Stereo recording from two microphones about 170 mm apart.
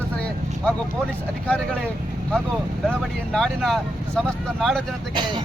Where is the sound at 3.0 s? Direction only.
Centre (ahead or behind).